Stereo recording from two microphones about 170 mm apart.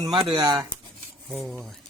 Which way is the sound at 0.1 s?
25° right (ahead or behind).